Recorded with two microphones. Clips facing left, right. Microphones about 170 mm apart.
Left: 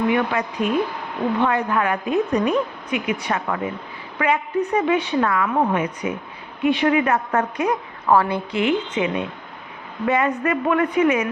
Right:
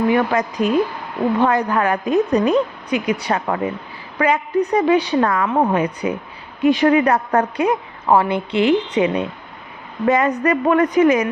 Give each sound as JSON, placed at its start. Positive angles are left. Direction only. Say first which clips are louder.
{"t": 0.1, "sound": "a woman's voice", "louder": "right 4 dB", "side_deg": -40}
{"t": 8.5, "sound": "a woman's voice", "louder": "right 5 dB", "side_deg": -35}